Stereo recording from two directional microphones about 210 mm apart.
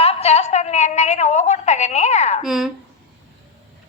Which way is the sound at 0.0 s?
30° left (ahead or behind).